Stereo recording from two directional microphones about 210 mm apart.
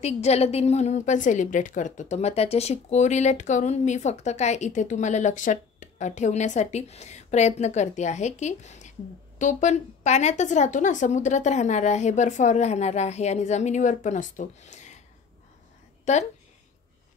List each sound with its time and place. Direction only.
0.0 s a woman's voice: 30° left (ahead or behind)
16.1 s a woman's voice: 30° left (ahead or behind)